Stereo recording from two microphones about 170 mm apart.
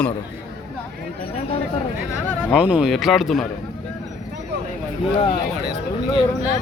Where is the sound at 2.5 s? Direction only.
5° right (ahead or behind).